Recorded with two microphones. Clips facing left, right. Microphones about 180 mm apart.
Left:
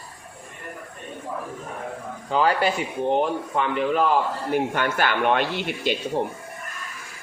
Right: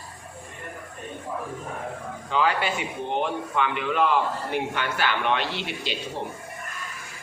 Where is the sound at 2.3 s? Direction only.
40° left (ahead or behind).